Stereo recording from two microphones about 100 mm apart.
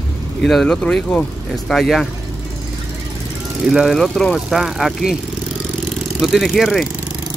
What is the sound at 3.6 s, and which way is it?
Speech, 5° right (ahead or behind).